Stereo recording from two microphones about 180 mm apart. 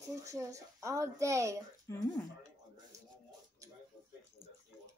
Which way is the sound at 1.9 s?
15° left (ahead or behind).